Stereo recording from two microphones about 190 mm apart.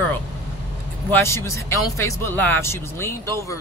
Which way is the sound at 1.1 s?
15° left (ahead or behind).